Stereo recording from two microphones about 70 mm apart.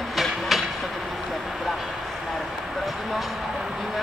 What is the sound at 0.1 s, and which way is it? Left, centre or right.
Train, centre.